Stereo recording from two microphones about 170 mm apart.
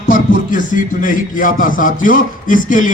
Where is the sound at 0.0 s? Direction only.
50° left (ahead or behind).